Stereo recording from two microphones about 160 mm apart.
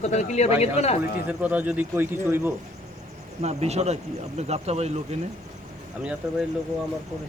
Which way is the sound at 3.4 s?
40° right (ahead or behind).